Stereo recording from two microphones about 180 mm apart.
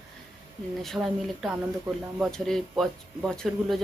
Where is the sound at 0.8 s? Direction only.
Centre (ahead or behind).